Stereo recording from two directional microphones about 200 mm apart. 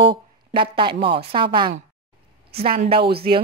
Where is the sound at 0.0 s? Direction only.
25° right (ahead or behind).